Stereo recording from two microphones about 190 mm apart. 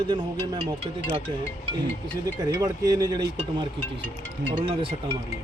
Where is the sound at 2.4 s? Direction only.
20° right (ahead or behind).